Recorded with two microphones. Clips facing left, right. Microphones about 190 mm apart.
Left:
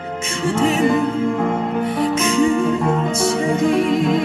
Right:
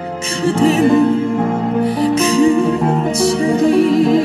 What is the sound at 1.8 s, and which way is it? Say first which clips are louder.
Music: right 5 dB; 35° right (ahead or behind).